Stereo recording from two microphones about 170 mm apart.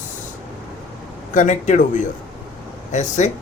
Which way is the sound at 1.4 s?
45° left (ahead or behind).